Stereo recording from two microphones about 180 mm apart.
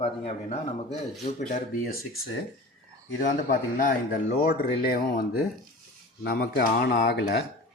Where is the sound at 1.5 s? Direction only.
55° left (ahead or behind).